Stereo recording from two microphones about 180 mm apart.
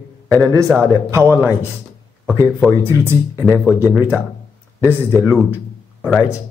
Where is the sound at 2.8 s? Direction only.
15° right (ahead or behind).